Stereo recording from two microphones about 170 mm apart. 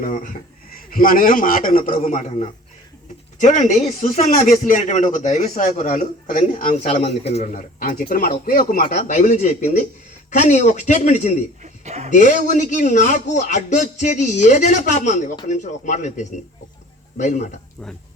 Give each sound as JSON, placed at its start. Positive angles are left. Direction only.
{"t": 0.0, "sound": "speech", "side_deg": 50}
{"t": 1.9, "sound": "a man's voice", "side_deg": 45}
{"t": 7.8, "sound": "speech", "side_deg": 55}
{"t": 11.6, "sound": "a sound", "side_deg": -40}
{"t": 12.1, "sound": "speech", "side_deg": 45}